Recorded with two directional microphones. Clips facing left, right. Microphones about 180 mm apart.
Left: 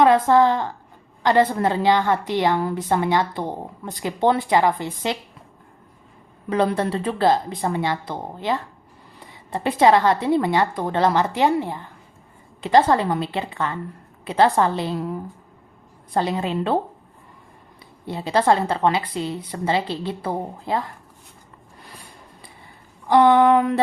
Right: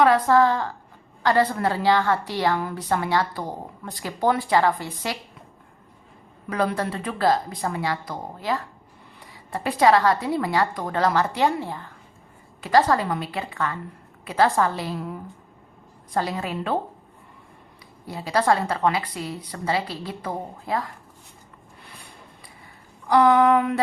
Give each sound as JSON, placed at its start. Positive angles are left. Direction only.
{"t": 0.0, "sound": "a woman's voice", "side_deg": 20}
{"t": 6.5, "sound": "a woman's voice", "side_deg": 25}
{"t": 16.1, "sound": "a woman's voice", "side_deg": 25}
{"t": 18.0, "sound": "a woman's voice", "side_deg": 25}
{"t": 23.0, "sound": "a woman's voice", "side_deg": 25}